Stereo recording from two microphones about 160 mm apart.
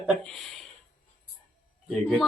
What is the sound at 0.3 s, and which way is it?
Speech, centre (ahead or behind).